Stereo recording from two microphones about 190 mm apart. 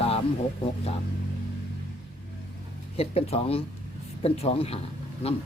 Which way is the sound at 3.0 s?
30° left (ahead or behind).